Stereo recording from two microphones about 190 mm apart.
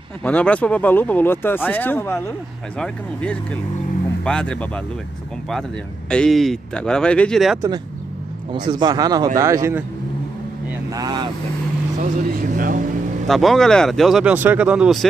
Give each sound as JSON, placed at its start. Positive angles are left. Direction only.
{"t": 0.2, "sound": "speech", "side_deg": 5}
{"t": 8.5, "sound": "a man's voice", "side_deg": -25}
{"t": 10.9, "sound": "a man's voice", "side_deg": -20}
{"t": 12.0, "sound": "speech", "side_deg": -45}
{"t": 13.3, "sound": "speech", "side_deg": 0}